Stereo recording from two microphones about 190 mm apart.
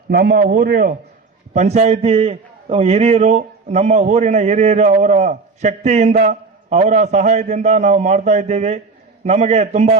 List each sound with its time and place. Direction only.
0.1 s a man's voice: 50° right (ahead or behind)
1.5 s a man's voice: 35° right (ahead or behind)